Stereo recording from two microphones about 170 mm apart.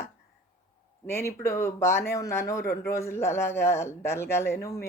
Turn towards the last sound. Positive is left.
turn(degrees=15)  # may be behind; listen again after turning